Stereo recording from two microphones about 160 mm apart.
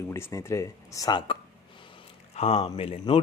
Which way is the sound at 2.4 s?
35° left (ahead or behind).